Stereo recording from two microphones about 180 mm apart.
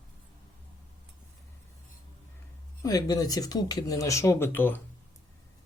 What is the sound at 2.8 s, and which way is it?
Speech, 20° left (ahead or behind).